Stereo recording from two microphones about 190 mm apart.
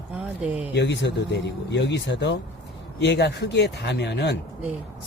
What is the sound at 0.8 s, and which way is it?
Speech, 65° left (ahead or behind).